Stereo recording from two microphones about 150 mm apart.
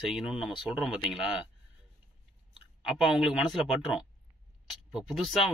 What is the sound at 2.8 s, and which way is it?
Speech, 5° right (ahead or behind).